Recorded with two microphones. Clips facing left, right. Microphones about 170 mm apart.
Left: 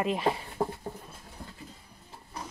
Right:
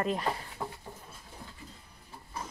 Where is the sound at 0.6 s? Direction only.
40° left (ahead or behind).